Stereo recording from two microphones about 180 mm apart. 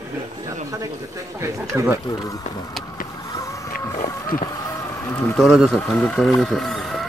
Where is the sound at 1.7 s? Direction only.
10° right (ahead or behind).